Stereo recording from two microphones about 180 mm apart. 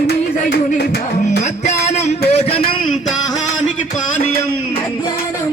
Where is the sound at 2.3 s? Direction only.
35° left (ahead or behind).